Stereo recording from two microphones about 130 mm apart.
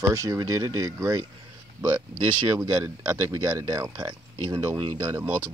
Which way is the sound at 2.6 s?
30° right (ahead or behind).